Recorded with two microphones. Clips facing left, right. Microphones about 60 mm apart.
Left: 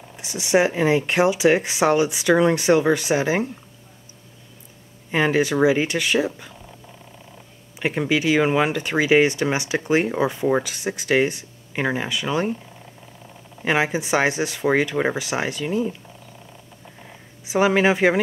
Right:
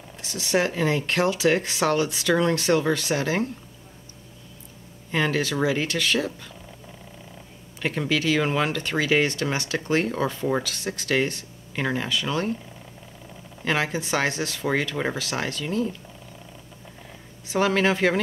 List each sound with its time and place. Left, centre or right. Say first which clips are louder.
0.2 s speech: left 5 dB; centre
5.1 s speech: left 5 dB; centre
7.8 s speech: left 3 dB; centre
13.7 s speech: left 4 dB; centre
17.5 s speech: left 4 dB; centre